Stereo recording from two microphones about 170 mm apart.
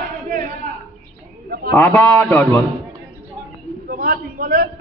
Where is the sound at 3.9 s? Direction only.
60° right (ahead or behind).